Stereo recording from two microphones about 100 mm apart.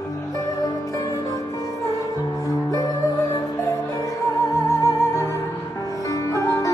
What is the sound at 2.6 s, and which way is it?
Music, 35° left (ahead or behind).